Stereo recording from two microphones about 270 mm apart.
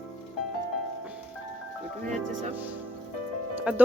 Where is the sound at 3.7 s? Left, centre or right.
Centre.